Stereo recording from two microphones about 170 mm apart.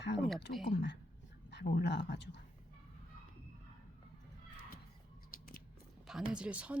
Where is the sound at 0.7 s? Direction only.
90° left.